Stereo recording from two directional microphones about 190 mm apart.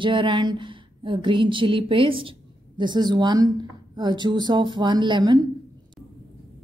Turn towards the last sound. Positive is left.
turn(degrees=-20)  # may be behind; listen again after turning